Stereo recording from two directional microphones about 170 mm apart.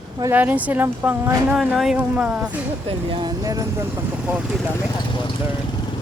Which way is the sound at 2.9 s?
25° right (ahead or behind).